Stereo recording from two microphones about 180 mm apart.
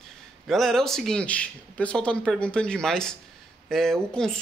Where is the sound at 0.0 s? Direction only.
Centre (ahead or behind).